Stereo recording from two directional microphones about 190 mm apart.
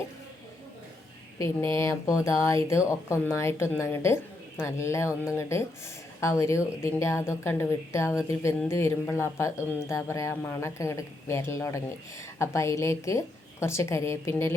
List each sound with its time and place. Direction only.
1.4 s speech: 15° left (ahead or behind)